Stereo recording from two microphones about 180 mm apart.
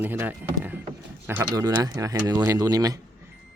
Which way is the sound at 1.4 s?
20° right (ahead or behind).